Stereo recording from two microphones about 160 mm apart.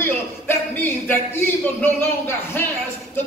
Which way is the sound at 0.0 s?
15° left (ahead or behind).